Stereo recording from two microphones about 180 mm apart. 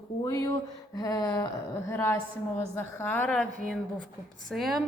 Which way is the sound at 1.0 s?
20° left (ahead or behind).